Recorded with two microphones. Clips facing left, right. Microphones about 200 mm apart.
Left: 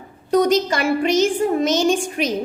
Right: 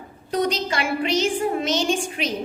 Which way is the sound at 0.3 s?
45° left (ahead or behind).